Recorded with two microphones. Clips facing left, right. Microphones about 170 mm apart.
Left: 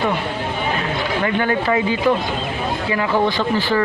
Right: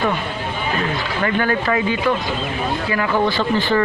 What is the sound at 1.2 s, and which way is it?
Speech, 20° left (ahead or behind).